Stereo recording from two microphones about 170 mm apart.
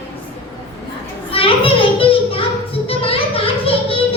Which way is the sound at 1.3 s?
35° left (ahead or behind).